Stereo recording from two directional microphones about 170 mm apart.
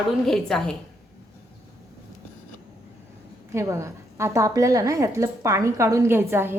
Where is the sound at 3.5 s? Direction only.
15° right (ahead or behind).